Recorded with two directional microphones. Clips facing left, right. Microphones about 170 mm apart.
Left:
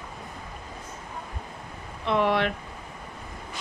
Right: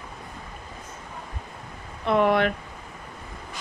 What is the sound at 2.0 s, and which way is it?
Speech, 50° right (ahead or behind).